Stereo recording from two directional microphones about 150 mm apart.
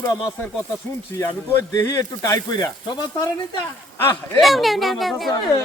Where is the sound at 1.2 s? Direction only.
15° left (ahead or behind).